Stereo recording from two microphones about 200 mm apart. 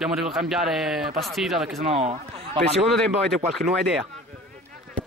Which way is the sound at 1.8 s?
30° right (ahead or behind).